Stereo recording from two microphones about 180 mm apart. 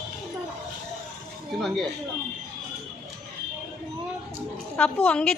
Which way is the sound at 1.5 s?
Centre (ahead or behind).